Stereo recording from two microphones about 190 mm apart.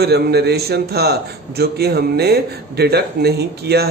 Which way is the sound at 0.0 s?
60° right (ahead or behind).